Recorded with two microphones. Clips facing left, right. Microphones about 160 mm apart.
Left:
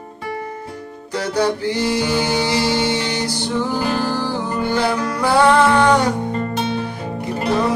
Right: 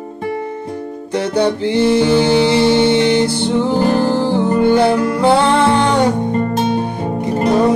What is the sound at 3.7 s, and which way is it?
Music, 55° right (ahead or behind).